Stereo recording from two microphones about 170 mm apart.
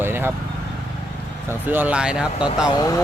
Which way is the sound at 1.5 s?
10° right (ahead or behind).